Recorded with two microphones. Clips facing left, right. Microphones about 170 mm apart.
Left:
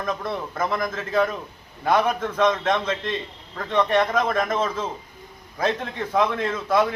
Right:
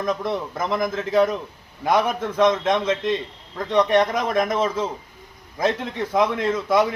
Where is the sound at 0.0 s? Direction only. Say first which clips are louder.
Right 3 dB; 15° right (ahead or behind).